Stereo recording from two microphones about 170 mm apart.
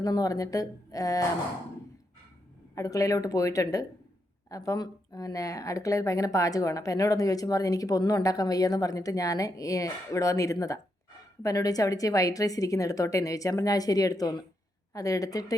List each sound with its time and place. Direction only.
0.0 s speech: 20° left (ahead or behind)
2.7 s speech: 20° left (ahead or behind)